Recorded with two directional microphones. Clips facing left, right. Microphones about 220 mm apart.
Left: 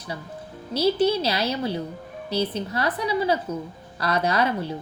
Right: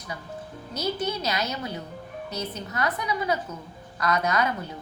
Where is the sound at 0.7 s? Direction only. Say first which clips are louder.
Left 8 dB; 30° left (ahead or behind).